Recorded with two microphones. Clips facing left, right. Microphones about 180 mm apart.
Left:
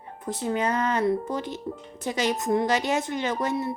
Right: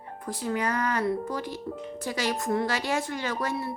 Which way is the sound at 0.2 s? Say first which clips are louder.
Left 3 dB; 25° left (ahead or behind).